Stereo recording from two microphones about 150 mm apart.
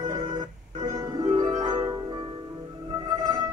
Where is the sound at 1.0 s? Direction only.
25° right (ahead or behind).